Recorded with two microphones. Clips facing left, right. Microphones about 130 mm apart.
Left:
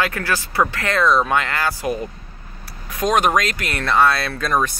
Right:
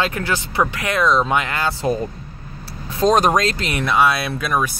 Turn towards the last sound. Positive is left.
turn(degrees=-10)  # may be behind; listen again after turning